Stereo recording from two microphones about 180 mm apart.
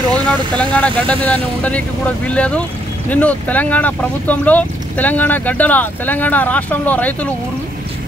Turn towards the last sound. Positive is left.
turn(degrees=10)  # may be behind; listen again after turning